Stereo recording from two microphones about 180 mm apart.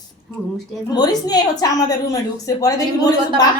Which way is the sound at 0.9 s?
20° left (ahead or behind).